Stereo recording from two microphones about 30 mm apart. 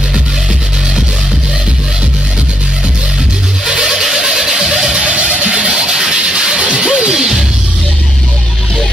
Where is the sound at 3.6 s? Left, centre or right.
Right.